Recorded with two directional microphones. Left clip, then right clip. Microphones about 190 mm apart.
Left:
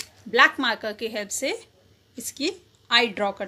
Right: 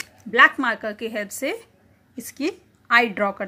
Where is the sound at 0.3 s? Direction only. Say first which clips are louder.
Right 3 dB; 5° right (ahead or behind).